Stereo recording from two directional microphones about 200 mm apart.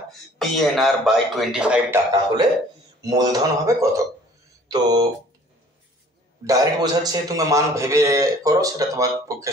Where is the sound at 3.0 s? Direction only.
20° right (ahead or behind).